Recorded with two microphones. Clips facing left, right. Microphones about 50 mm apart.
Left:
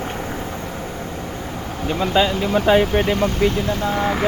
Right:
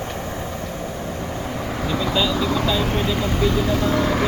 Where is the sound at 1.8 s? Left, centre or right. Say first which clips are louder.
Left 4 dB; left.